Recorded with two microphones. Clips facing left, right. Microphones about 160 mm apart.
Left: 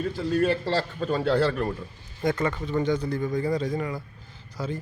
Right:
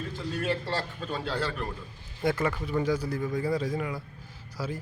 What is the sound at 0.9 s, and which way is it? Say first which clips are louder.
Speech: left 9 dB; 50° left (ahead or behind).